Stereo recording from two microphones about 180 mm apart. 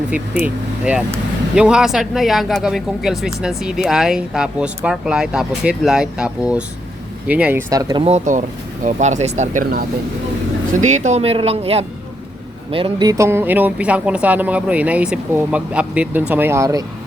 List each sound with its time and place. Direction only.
0.1 s speech: 5° right (ahead or behind)
7.7 s speech: 20° right (ahead or behind)